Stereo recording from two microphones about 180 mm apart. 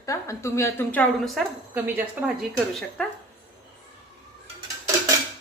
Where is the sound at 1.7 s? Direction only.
10° right (ahead or behind).